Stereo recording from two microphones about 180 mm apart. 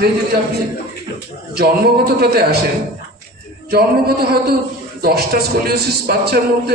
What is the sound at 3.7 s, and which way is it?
A man's voice, 60° right (ahead or behind).